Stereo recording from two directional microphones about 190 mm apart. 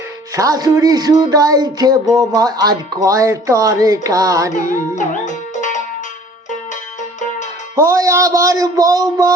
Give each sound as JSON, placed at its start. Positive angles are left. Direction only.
{"t": 0.3, "sound": "speech", "side_deg": -20}
{"t": 4.5, "sound": "music", "side_deg": 45}
{"t": 7.8, "sound": "speech", "side_deg": -15}